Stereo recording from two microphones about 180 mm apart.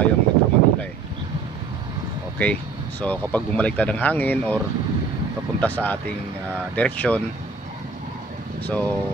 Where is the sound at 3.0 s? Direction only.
10° left (ahead or behind).